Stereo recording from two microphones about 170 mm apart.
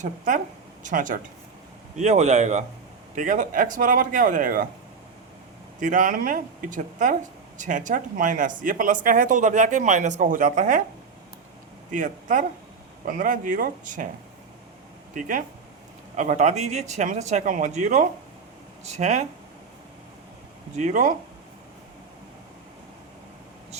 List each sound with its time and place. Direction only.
0.0 s speech: 50° right (ahead or behind)
5.8 s speech: 50° right (ahead or behind)
11.9 s speech: 50° right (ahead or behind)
15.1 s speech: 55° right (ahead or behind)
20.7 s speech: 45° right (ahead or behind)